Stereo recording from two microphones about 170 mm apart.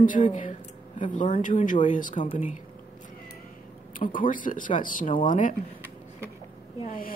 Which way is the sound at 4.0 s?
50° left (ahead or behind).